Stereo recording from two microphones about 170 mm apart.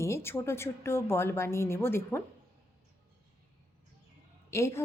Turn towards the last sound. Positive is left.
turn(degrees=15)  # may be behind; listen again after turning